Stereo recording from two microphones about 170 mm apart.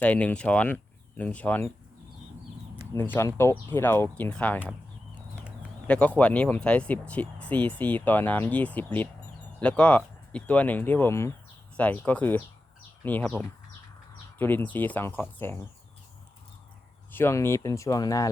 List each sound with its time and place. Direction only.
0.0 s speech: 10° left (ahead or behind)
2.9 s speech: 15° left (ahead or behind)
5.9 s speech: 10° left (ahead or behind)
17.1 s speech: 15° left (ahead or behind)